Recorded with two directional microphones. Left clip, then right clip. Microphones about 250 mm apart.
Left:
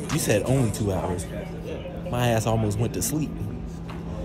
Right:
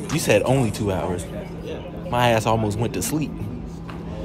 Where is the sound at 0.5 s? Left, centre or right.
Centre.